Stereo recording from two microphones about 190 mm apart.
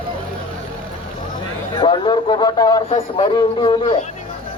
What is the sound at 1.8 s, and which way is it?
A man's voice, 25° left (ahead or behind).